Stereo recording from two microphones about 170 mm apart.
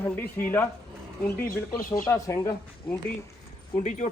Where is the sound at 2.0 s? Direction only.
20° left (ahead or behind).